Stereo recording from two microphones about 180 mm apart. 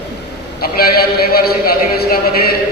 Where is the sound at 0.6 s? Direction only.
60° left (ahead or behind).